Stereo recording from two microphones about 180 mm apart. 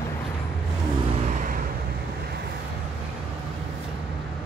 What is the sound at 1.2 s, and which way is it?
Vehicle, 45° right (ahead or behind).